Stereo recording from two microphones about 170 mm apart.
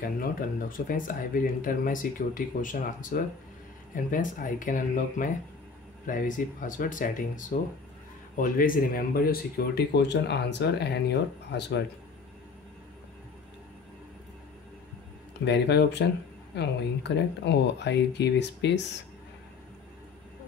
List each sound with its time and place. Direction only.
0.0 s speech: 55° left (ahead or behind); by 11.8 s 85° left
15.4 s speech: 80° left